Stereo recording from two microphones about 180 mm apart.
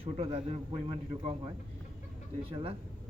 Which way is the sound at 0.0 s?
30° right (ahead or behind).